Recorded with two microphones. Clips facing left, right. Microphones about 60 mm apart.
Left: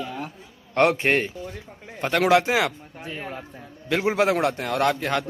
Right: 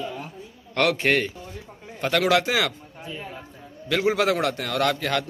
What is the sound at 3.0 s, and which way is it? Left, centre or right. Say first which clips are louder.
Speech: left 2 dB; left.